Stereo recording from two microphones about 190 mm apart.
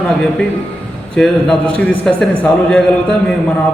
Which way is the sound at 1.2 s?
5° left (ahead or behind).